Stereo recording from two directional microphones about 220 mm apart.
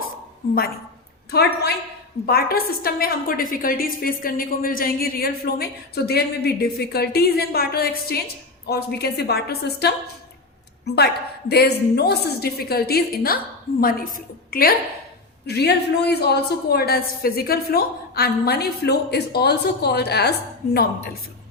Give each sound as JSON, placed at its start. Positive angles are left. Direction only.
{"t": 1.3, "sound": "a woman's voice", "side_deg": 45}
{"t": 14.5, "sound": "a woman's voice", "side_deg": 40}